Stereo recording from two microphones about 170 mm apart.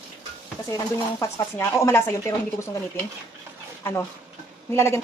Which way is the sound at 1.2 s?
15° left (ahead or behind).